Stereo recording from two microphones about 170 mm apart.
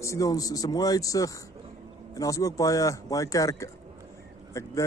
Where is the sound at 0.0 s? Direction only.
20° left (ahead or behind).